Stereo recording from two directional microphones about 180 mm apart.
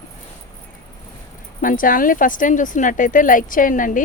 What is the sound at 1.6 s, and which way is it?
Speech, 50° left (ahead or behind).